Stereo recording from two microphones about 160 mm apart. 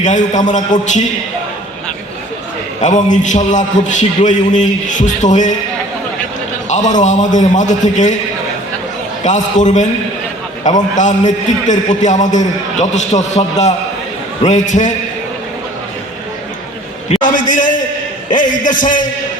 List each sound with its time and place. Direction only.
0.0 s a man's voice: 50° left (ahead or behind)
2.8 s a man's voice: 50° left (ahead or behind)
6.7 s a man's voice: 50° left (ahead or behind)
9.2 s a man's voice: 50° left (ahead or behind)
17.2 s a man's voice: 55° left (ahead or behind)